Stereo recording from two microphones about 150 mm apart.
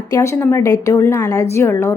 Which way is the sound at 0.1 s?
20° left (ahead or behind).